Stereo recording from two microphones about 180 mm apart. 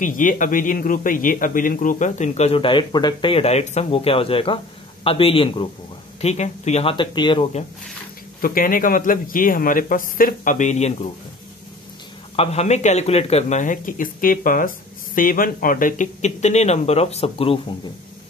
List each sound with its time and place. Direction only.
0.0 s a man's voice: 45° left (ahead or behind); by 7.4 s 25° left (ahead or behind)
8.4 s speech: 50° left (ahead or behind)
12.4 s a man's voice: 35° left (ahead or behind)